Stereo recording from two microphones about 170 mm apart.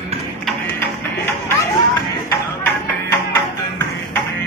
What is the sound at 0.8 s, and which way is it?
Music, 10° left (ahead or behind).